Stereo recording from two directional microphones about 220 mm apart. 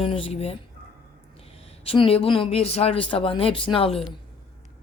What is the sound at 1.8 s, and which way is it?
Speech, 25° left (ahead or behind).